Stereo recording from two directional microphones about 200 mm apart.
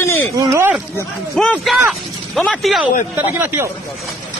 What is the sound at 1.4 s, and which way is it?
Speech, centre (ahead or behind).